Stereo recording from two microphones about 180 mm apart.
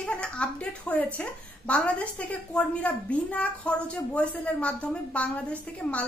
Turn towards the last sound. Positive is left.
turn(degrees=5)  # may be behind; listen again after turning